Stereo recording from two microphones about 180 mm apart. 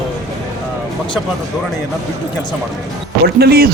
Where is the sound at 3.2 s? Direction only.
60° right (ahead or behind).